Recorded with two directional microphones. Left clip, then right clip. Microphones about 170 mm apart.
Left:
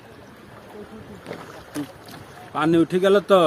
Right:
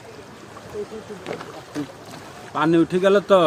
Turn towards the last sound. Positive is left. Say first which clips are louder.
# right 1 dB
turn(degrees=25)  # may be behind; listen again after turning